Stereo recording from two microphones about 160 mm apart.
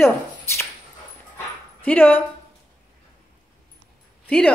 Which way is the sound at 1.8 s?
10° left (ahead or behind).